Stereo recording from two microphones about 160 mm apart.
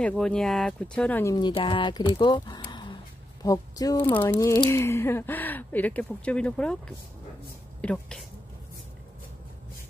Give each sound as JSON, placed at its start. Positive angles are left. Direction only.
{"t": 0.2, "sound": "speech", "side_deg": 5}
{"t": 1.2, "sound": "speech", "side_deg": 25}
{"t": 7.8, "sound": "speech", "side_deg": 5}